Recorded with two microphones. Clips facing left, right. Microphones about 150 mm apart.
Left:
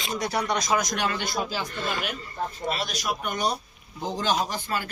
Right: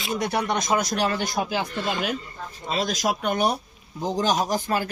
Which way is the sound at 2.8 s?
90° right.